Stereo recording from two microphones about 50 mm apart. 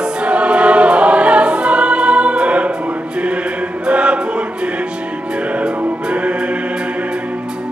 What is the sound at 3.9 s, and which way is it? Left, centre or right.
Choir, right.